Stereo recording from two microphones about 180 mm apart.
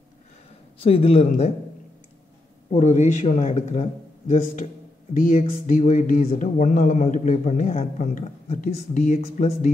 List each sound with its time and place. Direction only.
0.7 s speech: 30° left (ahead or behind)
2.7 s speech: 40° left (ahead or behind)
5.1 s speech: 45° left (ahead or behind)